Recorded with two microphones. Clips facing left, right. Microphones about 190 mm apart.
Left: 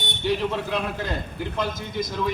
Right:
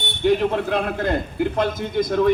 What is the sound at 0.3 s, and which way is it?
A man's voice, 50° right (ahead or behind).